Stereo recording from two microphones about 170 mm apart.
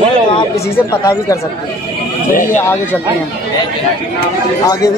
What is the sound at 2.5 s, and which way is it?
Speech, 10° left (ahead or behind).